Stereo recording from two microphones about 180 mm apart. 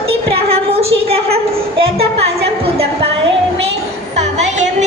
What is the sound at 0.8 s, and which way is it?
Speech, 35° right (ahead or behind).